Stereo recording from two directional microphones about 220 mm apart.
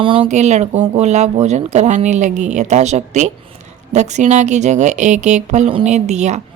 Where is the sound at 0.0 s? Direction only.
25° right (ahead or behind).